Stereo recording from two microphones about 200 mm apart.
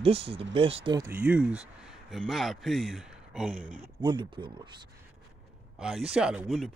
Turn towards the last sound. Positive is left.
turn(degrees=0)  # may be behind; listen again after turning